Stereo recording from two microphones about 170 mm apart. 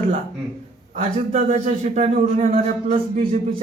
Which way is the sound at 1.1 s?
40° right (ahead or behind).